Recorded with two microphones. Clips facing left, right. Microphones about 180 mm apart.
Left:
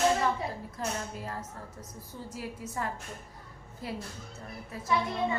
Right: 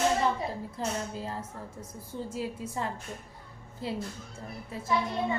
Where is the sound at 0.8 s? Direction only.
30° right (ahead or behind).